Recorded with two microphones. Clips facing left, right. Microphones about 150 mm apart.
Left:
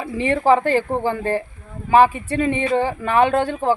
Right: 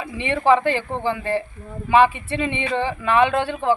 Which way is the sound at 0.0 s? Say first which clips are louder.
Left 2 dB; 40° left (ahead or behind).